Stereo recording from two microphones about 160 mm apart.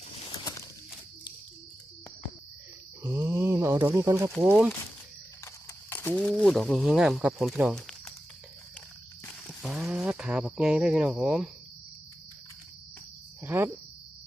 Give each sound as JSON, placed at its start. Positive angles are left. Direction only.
{"t": 0.3, "sound": "a sound", "side_deg": 25}
{"t": 3.0, "sound": "speech", "side_deg": -15}
{"t": 5.9, "sound": "speech", "side_deg": 10}
{"t": 7.8, "sound": "a sound", "side_deg": 5}
{"t": 9.6, "sound": "speech", "side_deg": 0}
{"t": 13.4, "sound": "speech", "side_deg": -15}